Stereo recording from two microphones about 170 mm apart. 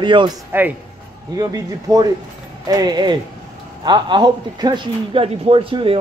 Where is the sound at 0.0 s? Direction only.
30° right (ahead or behind).